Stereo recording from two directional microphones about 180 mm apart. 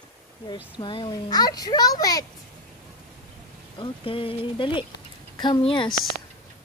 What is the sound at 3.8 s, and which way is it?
A child's voice, 30° left (ahead or behind).